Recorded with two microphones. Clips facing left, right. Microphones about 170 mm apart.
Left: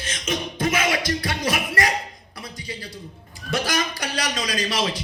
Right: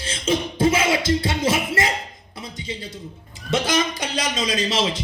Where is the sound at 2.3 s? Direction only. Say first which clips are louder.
Right 3 dB; 20° right (ahead or behind).